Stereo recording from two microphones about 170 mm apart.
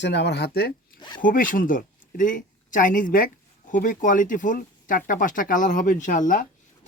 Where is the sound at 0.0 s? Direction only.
90° left; by 0.7 s 70° left (ahead or behind).